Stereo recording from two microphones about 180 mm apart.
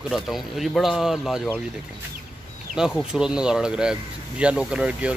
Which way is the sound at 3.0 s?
5° right (ahead or behind).